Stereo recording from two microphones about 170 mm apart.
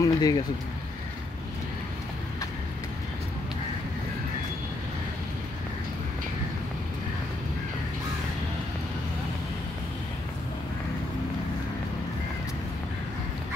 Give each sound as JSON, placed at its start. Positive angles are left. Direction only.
{"t": 0.0, "sound": "speech", "side_deg": 20}